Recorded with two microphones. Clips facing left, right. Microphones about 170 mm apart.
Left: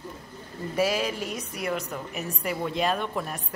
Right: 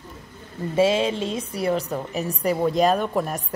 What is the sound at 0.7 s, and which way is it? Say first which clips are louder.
A woman's voice: right 6 dB; 25° right (ahead or behind).